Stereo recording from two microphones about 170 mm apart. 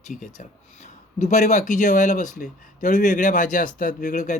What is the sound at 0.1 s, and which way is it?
Speech, 45° left (ahead or behind).